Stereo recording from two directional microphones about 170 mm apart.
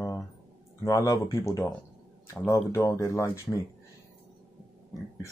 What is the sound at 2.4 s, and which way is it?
Speech, 20° left (ahead or behind).